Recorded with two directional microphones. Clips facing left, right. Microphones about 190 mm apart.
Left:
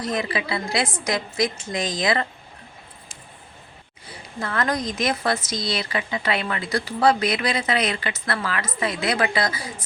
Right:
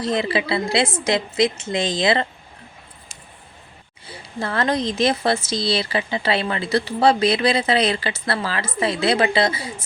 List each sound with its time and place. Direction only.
0.0 s speech: 30° right (ahead or behind)
4.0 s speech: 30° right (ahead or behind)